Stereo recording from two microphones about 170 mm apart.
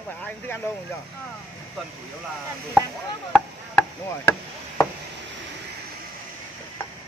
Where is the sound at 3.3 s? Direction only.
15° left (ahead or behind).